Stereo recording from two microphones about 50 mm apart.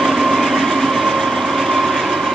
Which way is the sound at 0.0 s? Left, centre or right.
Centre.